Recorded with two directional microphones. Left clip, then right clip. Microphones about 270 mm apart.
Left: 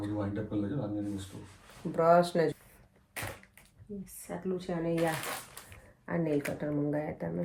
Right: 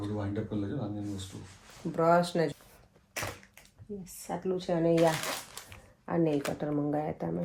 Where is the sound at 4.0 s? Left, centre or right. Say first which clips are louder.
Right 4 dB; centre.